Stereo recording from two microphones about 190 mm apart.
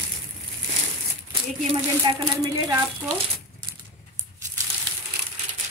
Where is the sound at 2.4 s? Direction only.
15° right (ahead or behind).